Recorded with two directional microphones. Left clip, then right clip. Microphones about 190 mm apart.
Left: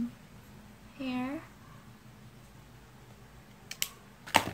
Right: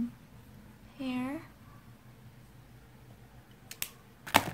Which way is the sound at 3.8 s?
15° right (ahead or behind).